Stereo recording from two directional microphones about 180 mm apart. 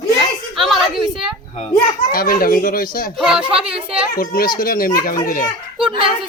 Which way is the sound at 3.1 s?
5° right (ahead or behind).